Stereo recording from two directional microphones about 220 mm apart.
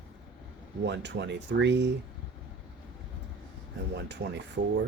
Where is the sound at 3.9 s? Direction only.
50° right (ahead or behind).